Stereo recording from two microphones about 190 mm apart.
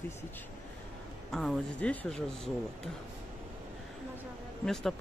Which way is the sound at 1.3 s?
Centre (ahead or behind).